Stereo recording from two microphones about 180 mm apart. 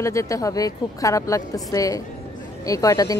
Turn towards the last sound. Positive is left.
turn(degrees=20)  # may be behind; listen again after turning